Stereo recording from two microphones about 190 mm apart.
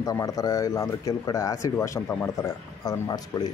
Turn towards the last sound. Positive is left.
turn(degrees=20)  # may be behind; listen again after turning